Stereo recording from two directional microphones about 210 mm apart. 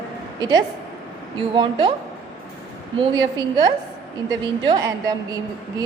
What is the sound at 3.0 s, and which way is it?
A woman's voice, 20° right (ahead or behind).